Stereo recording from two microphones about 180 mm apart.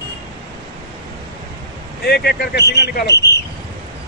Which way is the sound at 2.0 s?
60° left (ahead or behind).